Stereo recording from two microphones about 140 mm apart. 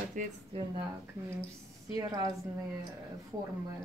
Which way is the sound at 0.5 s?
45° right (ahead or behind).